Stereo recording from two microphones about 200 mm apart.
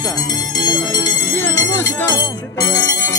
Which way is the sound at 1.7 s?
10° left (ahead or behind).